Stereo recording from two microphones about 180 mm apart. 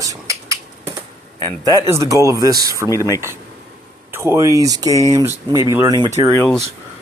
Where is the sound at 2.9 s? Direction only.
20° left (ahead or behind).